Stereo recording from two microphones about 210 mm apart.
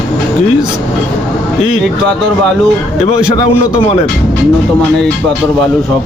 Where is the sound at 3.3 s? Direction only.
25° left (ahead or behind).